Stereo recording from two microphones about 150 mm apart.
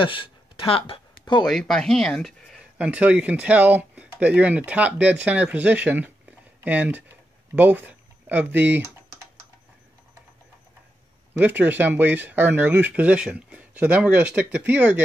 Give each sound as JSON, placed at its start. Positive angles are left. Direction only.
{"t": 0.0, "sound": "a sound", "side_deg": 35}
{"t": 1.4, "sound": "speech", "side_deg": 5}
{"t": 2.8, "sound": "speech", "side_deg": -10}
{"t": 11.3, "sound": "speech", "side_deg": -10}